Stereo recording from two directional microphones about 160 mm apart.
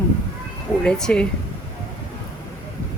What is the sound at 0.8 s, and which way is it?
Speech, 5° left (ahead or behind).